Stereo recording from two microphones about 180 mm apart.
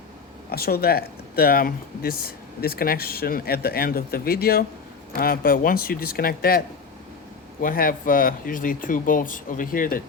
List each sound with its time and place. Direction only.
0.5 s speech: 60° left (ahead or behind)
7.6 s speech: 50° left (ahead or behind)